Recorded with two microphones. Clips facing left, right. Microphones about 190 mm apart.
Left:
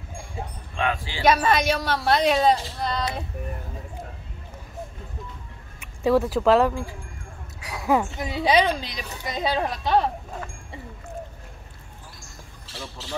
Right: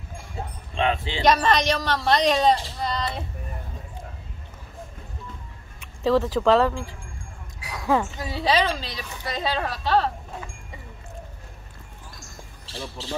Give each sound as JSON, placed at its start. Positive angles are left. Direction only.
{"t": 0.7, "sound": "speech", "side_deg": -25}
{"t": 1.2, "sound": "a woman's voice", "side_deg": 5}
{"t": 6.0, "sound": "a woman's voice", "side_deg": 10}